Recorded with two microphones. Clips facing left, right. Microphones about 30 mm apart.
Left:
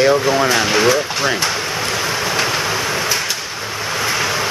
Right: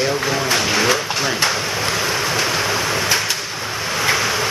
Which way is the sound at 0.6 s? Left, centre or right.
Centre.